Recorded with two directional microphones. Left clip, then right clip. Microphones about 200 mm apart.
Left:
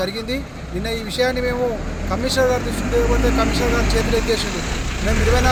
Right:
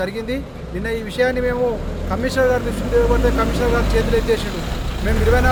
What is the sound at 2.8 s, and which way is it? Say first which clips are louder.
Speech: right 2 dB; 55° right (ahead or behind).